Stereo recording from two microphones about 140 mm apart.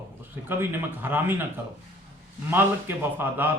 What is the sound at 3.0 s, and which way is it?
Speech, 15° right (ahead or behind).